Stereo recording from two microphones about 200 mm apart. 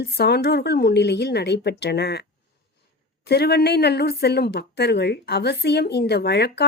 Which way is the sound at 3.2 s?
55° left (ahead or behind).